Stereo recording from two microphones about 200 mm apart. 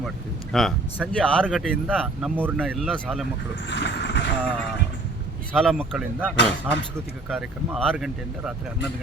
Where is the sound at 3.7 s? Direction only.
60° left (ahead or behind).